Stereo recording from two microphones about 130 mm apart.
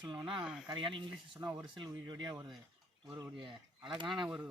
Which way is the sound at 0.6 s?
40° right (ahead or behind).